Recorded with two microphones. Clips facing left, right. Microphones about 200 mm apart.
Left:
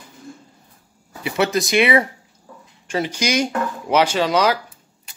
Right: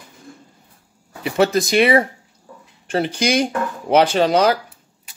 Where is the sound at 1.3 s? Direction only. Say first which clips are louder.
Right 2 dB; 35° right (ahead or behind).